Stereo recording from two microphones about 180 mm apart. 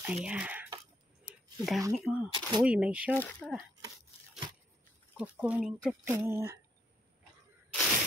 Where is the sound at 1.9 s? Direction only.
5° right (ahead or behind).